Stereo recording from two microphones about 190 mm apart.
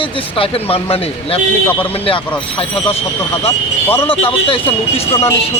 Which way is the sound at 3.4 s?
10° left (ahead or behind).